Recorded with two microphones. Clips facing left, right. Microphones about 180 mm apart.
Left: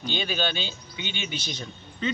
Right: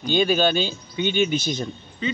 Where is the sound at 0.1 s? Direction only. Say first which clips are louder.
Right 10 dB; 45° right (ahead or behind).